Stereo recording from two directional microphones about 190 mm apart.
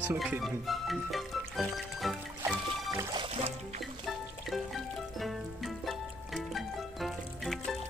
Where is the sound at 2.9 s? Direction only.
25° right (ahead or behind).